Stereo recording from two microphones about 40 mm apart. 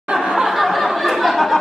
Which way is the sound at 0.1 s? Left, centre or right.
Centre.